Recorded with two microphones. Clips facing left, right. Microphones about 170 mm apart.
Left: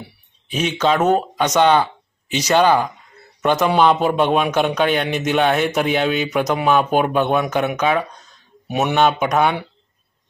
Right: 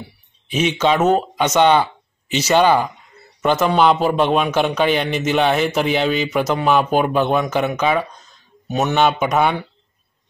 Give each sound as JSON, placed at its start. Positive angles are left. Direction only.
{"t": 0.5, "sound": "speech", "side_deg": -5}
{"t": 3.6, "sound": "speech", "side_deg": 5}
{"t": 8.6, "sound": "speech", "side_deg": 10}
{"t": 8.9, "sound": "speech", "side_deg": 0}